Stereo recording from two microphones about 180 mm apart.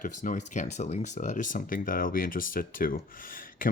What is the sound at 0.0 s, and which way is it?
Speech, 45° left (ahead or behind).